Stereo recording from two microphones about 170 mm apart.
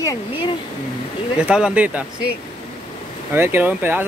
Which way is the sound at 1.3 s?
5° right (ahead or behind).